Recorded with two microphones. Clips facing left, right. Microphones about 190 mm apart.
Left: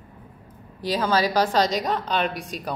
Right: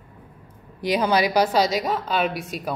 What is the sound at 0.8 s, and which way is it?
A woman's voice, 15° right (ahead or behind).